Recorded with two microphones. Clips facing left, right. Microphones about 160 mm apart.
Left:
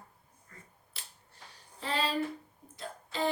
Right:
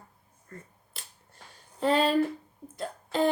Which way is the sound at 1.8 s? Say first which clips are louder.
Right 9 dB; 50° right (ahead or behind).